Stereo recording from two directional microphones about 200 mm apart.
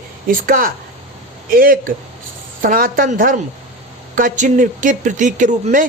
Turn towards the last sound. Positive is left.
turn(degrees=-40)  # may be behind; listen again after turning